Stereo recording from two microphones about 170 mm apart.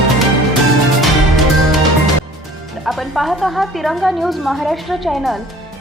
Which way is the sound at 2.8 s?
Centre (ahead or behind).